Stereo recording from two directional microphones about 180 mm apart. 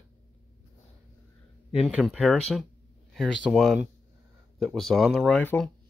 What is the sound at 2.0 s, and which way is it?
Speech, 5° left (ahead or behind).